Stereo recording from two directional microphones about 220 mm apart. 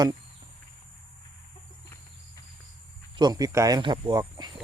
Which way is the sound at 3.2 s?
15° right (ahead or behind).